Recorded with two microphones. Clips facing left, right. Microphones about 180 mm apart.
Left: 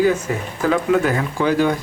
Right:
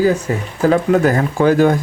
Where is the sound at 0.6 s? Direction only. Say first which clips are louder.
Right 4 dB; 40° right (ahead or behind).